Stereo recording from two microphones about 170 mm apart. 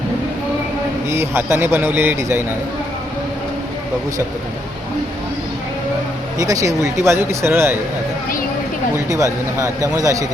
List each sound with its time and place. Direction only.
1.1 s speech: 15° right (ahead or behind)
6.4 s speech: 20° right (ahead or behind)
9.9 s a man's voice: 20° right (ahead or behind)